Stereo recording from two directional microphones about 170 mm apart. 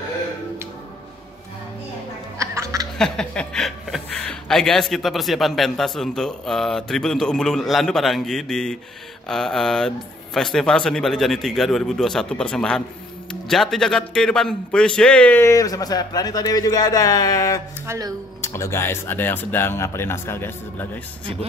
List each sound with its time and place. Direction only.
2.3 s duck: 15° right (ahead or behind)
3.0 s a man's voice: 5° left (ahead or behind); by 17.6 s 20° left (ahead or behind)
17.8 s speech: 20° right (ahead or behind)
18.4 s speech: 15° left (ahead or behind)